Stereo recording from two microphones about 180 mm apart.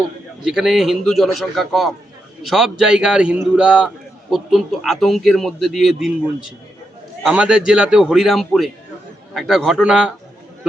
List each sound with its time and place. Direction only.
0.4 s a man's voice: centre (ahead or behind)
7.2 s a man's voice: 5° right (ahead or behind)